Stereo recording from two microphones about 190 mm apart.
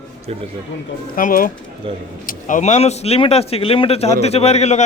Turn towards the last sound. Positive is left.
turn(degrees=35)  # may be behind; listen again after turning